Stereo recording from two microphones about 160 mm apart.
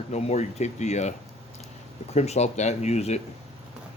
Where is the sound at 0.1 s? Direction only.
45° left (ahead or behind).